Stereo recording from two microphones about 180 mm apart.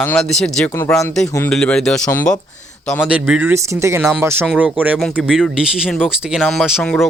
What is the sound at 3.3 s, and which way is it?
Speech, 10° right (ahead or behind).